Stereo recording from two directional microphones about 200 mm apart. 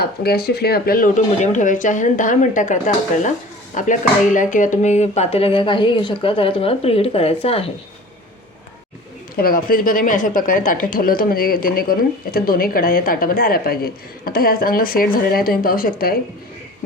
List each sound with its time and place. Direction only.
0.0 s speech: 50° left (ahead or behind); by 7.7 s 30° left (ahead or behind)
9.3 s a woman's voice: 45° left (ahead or behind)